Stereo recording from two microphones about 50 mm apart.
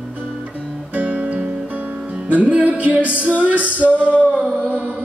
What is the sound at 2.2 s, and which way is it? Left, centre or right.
Music, right.